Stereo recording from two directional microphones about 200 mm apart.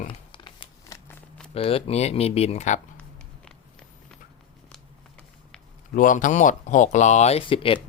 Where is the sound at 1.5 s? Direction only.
30° left (ahead or behind).